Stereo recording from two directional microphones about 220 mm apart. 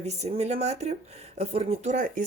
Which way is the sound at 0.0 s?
30° right (ahead or behind).